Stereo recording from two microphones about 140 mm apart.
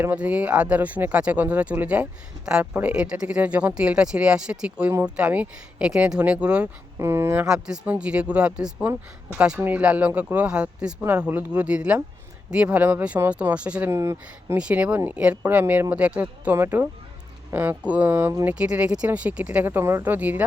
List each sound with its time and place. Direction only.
0.0 s speech: 10° right (ahead or behind)
7.0 s speech: 20° right (ahead or behind)
7.4 s speech: 5° right (ahead or behind)
13.9 s speech: 20° right (ahead or behind)
14.6 s speech: 10° right (ahead or behind)